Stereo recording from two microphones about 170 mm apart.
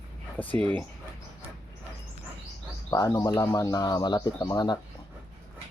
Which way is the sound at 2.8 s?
20° left (ahead or behind).